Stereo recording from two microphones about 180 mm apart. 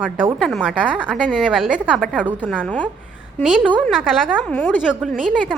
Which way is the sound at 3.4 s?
5° right (ahead or behind).